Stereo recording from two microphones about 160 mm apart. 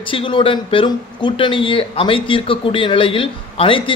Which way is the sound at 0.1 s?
35° left (ahead or behind).